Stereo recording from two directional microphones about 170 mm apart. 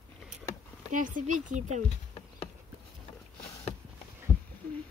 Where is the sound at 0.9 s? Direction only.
50° right (ahead or behind).